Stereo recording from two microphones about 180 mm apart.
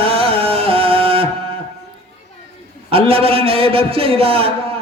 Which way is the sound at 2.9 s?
30° right (ahead or behind).